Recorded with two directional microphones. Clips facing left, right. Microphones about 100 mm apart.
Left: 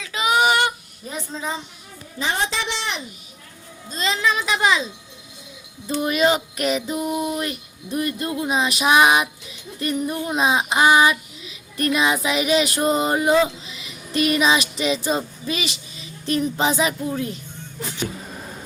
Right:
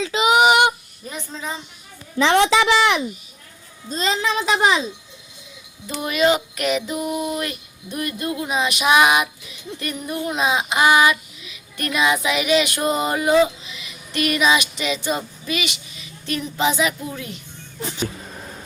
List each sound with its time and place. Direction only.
0.0 s female singing: 20° right (ahead or behind)
2.1 s a woman's voice: 85° right
3.8 s a woman's voice: 40° right (ahead or behind)
6.1 s child singing: 40° left (ahead or behind)
6.9 s a sound: 5° right (ahead or behind)
7.3 s child singing: 25° left (ahead or behind)
13.7 s a sound: 35° left (ahead or behind)